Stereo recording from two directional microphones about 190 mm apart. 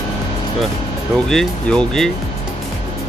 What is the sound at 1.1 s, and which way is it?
Speech, 5° left (ahead or behind).